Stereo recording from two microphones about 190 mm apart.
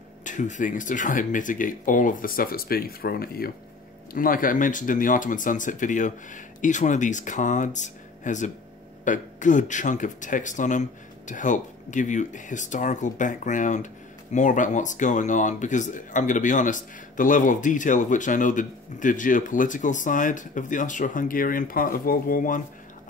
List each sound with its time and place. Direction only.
0.2 s speech: 40° left (ahead or behind)